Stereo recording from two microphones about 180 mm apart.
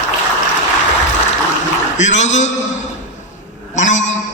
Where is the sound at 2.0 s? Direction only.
40° left (ahead or behind).